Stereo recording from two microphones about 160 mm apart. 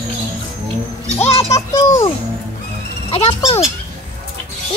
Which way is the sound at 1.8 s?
20° left (ahead or behind).